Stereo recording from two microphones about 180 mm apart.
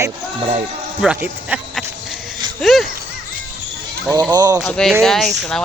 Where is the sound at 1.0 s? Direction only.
5° right (ahead or behind).